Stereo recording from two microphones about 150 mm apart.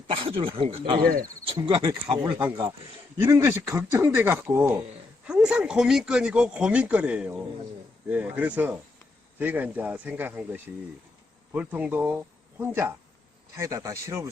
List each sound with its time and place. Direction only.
0.1 s speech: 40° right (ahead or behind)
1.0 s speech: 75° right (ahead or behind)
1.8 s speech: 25° right (ahead or behind)
5.2 s speech: 5° right (ahead or behind)